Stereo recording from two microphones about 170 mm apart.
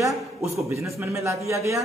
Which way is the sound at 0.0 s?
15° right (ahead or behind).